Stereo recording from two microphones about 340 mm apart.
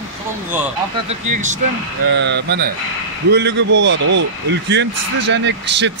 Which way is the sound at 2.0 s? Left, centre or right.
Right.